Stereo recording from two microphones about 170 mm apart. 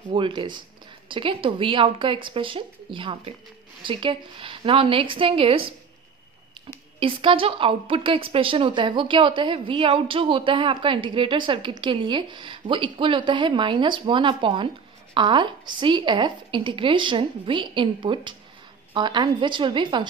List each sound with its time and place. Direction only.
0.1 s a woman's voice: 30° right (ahead or behind)
7.0 s a woman's voice: 30° right (ahead or behind)